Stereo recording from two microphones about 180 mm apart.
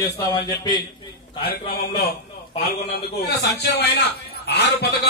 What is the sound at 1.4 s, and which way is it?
A man's voice, 60° left (ahead or behind).